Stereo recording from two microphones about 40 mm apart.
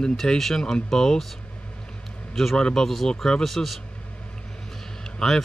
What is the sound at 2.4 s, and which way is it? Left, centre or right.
Speech, centre.